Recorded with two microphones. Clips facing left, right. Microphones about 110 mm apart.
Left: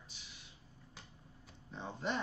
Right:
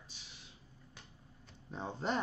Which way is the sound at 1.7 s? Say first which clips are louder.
Right 3 dB; 35° right (ahead or behind).